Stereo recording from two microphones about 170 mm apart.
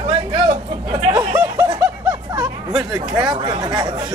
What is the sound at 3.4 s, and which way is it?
Speech, 25° right (ahead or behind).